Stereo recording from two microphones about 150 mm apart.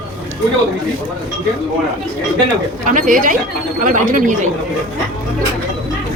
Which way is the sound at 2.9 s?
60° right (ahead or behind).